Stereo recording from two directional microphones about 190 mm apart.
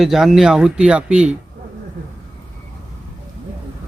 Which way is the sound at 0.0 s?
Centre (ahead or behind).